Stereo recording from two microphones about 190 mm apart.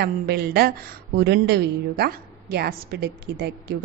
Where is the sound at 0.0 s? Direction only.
55° right (ahead or behind).